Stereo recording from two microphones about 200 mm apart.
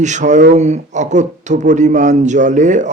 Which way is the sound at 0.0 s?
35° right (ahead or behind).